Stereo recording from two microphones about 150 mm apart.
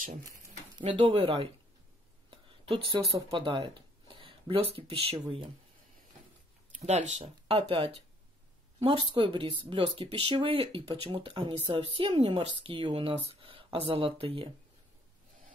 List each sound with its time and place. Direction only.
0.7 s speech: 35° right (ahead or behind)
6.7 s speech: 50° right (ahead or behind)
9.1 s speech: 35° right (ahead or behind)